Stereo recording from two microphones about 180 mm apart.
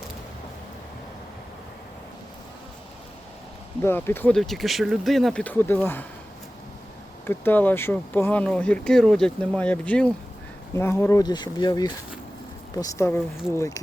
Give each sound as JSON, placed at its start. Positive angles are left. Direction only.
{"t": 3.8, "sound": "speech", "side_deg": 10}
{"t": 7.3, "sound": "speech", "side_deg": 10}